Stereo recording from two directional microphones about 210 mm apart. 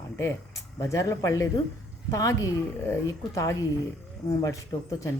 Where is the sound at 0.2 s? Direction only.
15° left (ahead or behind).